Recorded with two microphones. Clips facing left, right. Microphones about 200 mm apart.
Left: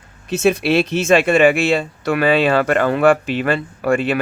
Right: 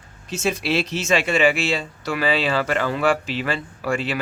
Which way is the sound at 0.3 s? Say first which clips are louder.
Left 7 dB; 60° left (ahead or behind).